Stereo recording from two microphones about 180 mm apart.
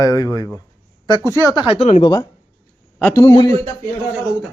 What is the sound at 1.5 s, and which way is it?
Speech, 30° left (ahead or behind).